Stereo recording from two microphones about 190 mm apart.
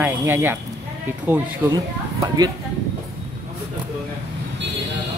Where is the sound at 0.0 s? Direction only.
10° right (ahead or behind).